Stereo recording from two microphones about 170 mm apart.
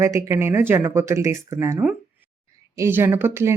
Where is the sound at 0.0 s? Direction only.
15° right (ahead or behind).